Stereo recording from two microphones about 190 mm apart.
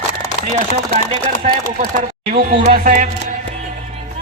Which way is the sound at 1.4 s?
45° right (ahead or behind).